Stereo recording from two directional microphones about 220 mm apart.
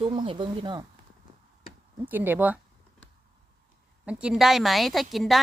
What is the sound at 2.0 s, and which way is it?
Speech, 10° right (ahead or behind).